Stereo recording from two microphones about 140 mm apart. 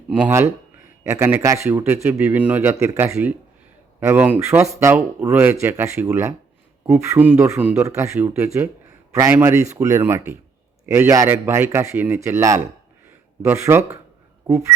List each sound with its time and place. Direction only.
0.2 s speech: 20° right (ahead or behind)
9.3 s speech: 15° right (ahead or behind)